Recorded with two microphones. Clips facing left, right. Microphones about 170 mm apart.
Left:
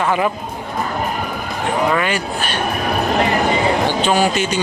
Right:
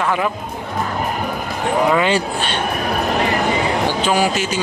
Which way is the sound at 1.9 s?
25° right (ahead or behind).